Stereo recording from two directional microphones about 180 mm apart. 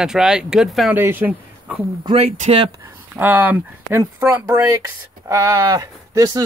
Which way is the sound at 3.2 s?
10° right (ahead or behind).